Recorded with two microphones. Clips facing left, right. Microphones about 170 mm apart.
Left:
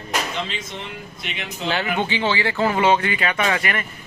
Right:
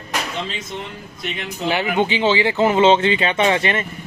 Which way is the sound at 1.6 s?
15° right (ahead or behind).